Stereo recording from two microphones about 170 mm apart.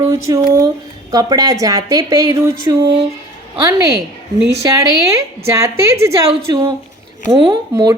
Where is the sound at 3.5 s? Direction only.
20° right (ahead or behind).